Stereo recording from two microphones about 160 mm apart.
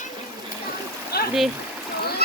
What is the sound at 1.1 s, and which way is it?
Stream, 80° left.